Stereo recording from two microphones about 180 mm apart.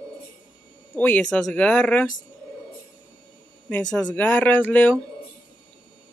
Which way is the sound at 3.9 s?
5° left (ahead or behind).